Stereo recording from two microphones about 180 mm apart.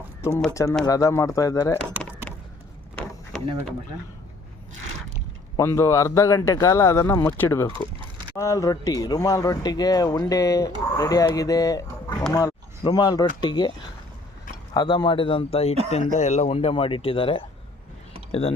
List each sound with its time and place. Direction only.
0.2 s speech: 15° left (ahead or behind)
2.3 s a sound: 10° left (ahead or behind)
5.5 s speech: 15° left (ahead or behind); by 18.5 s 35° left (ahead or behind)